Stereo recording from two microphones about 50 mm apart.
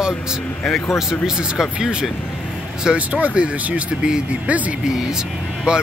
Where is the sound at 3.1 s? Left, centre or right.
Right.